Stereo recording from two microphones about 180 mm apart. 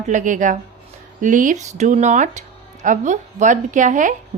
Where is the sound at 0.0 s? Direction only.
45° right (ahead or behind).